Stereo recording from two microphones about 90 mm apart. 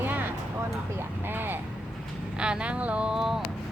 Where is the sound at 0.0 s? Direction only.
20° right (ahead or behind).